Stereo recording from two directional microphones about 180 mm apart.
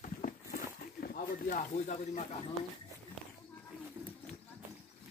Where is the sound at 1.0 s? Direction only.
55° left (ahead or behind).